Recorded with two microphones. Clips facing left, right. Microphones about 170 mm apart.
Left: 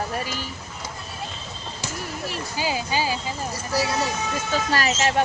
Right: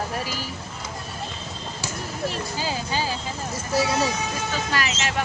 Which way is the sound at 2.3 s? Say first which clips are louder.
Left 1 dB; 10° left (ahead or behind).